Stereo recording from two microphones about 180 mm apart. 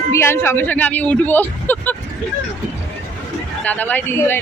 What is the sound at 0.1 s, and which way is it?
Speech, 15° left (ahead or behind).